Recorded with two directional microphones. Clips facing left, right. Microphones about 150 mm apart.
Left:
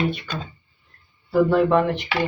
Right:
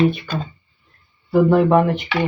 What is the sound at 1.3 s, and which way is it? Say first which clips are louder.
Speech: right 3 dB; 20° right (ahead or behind).